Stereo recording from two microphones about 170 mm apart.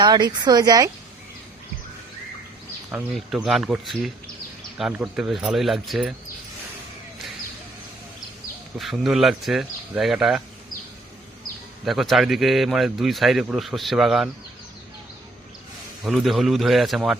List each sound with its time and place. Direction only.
0.0 s speech: 25° right (ahead or behind)
3.2 s a man's voice: centre (ahead or behind)
8.8 s a man's voice: centre (ahead or behind)
11.9 s a man's voice: centre (ahead or behind)
16.0 s a man's voice: centre (ahead or behind)